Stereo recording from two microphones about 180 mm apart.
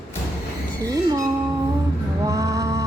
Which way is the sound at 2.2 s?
20° right (ahead or behind).